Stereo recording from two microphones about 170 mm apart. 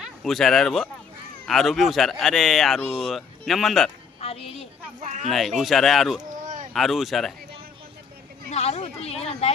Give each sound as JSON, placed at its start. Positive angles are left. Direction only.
{"t": 0.0, "sound": "speech", "side_deg": 0}
{"t": 4.2, "sound": "a sound", "side_deg": 35}
{"t": 4.9, "sound": "speech", "side_deg": -45}
{"t": 5.3, "sound": "speech", "side_deg": 0}
{"t": 8.4, "sound": "a woman's voice", "side_deg": 40}